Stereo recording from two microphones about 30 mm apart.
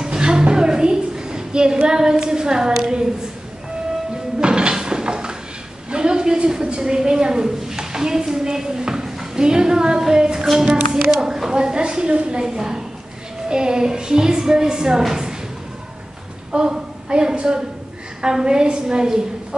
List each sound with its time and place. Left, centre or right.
0.0 s a sound: right
1.9 s speech: right
4.4 s a sound: right
5.9 s a woman's voice: right
12.4 s speech: right
16.5 s a woman's voice: right
18.4 s speech: right